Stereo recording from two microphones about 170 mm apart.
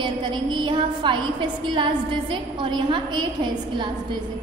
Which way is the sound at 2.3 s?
30° right (ahead or behind).